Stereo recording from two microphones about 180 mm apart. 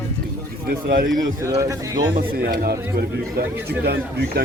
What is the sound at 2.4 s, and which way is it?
Speech, 60° right (ahead or behind).